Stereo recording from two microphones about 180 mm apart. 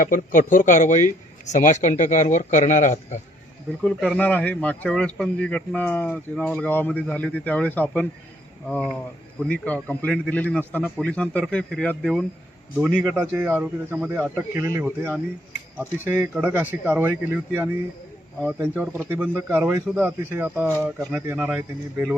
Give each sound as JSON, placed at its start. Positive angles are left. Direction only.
{"t": 0.0, "sound": "a man's voice", "side_deg": 50}
{"t": 3.8, "sound": "a man's voice", "side_deg": 5}